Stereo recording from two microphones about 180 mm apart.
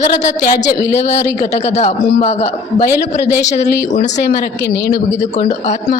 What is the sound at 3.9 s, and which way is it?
A man's voice, 40° left (ahead or behind).